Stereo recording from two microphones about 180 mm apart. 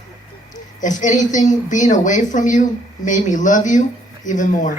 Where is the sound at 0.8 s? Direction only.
45° left (ahead or behind).